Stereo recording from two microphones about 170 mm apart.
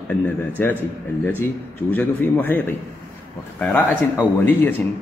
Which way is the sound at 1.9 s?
10° left (ahead or behind).